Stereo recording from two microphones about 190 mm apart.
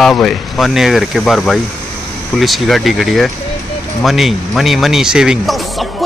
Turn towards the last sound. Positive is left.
turn(degrees=0)  # may be behind; listen again after turning